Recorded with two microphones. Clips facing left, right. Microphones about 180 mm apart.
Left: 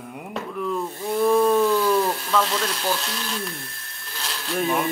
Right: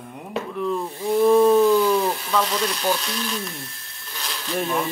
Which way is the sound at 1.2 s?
5° right (ahead or behind).